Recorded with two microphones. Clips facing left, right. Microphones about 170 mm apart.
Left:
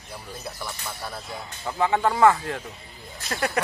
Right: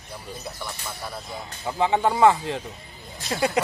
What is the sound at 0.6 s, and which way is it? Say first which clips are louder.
Speech: even; centre (ahead or behind).